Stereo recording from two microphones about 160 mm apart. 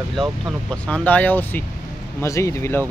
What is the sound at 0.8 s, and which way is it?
Speech, 10° left (ahead or behind).